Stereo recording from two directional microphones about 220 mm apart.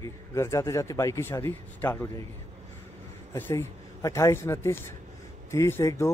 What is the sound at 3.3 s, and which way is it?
Speech, 10° left (ahead or behind).